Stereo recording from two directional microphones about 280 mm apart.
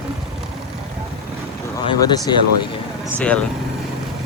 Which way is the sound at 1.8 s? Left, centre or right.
Centre.